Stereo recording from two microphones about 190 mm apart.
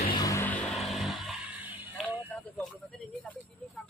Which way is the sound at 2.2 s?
5° left (ahead or behind).